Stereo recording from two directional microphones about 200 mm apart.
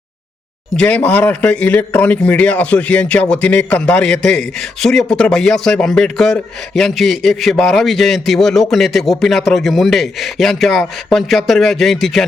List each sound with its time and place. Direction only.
0.8 s a man's voice: 5° left (ahead or behind)